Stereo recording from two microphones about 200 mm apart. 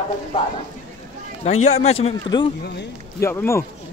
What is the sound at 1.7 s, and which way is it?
Speech, 35° left (ahead or behind).